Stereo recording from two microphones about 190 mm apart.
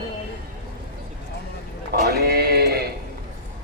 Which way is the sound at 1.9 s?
55° right (ahead or behind).